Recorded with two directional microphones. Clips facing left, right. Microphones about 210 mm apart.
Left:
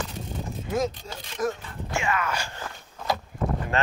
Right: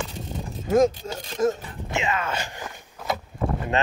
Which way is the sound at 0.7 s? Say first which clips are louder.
Right 9 dB; 50° right (ahead or behind).